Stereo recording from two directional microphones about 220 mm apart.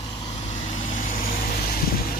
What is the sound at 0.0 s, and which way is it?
Vehicle, 25° left (ahead or behind).